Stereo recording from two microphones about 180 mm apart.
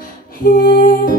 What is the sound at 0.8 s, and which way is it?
Music, 50° left (ahead or behind).